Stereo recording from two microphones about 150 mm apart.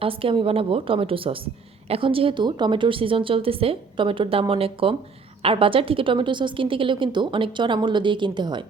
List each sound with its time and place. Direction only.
0.0 s a woman's voice: 35° right (ahead or behind)